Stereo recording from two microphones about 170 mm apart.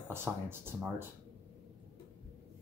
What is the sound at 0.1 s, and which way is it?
Speech, 15° right (ahead or behind).